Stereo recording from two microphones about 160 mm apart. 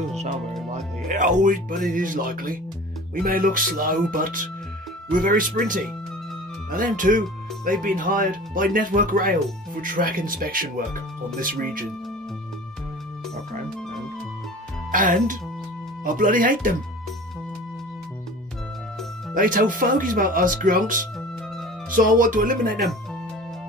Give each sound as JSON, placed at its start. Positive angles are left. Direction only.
{"t": 1.0, "sound": "speech", "side_deg": -50}
{"t": 14.9, "sound": "speech", "side_deg": -55}
{"t": 19.3, "sound": "speech", "side_deg": -60}